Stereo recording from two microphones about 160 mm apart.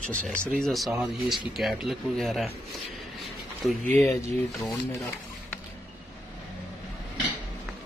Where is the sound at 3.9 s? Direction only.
15° left (ahead or behind).